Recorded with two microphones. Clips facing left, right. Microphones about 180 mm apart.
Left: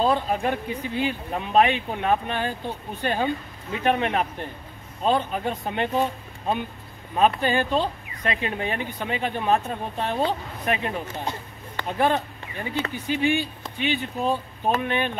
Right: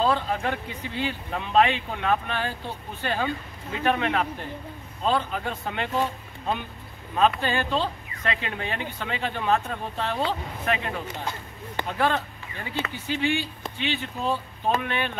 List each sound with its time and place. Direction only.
0.0 s speech: 15° left (ahead or behind)
7.2 s speech: 15° left (ahead or behind)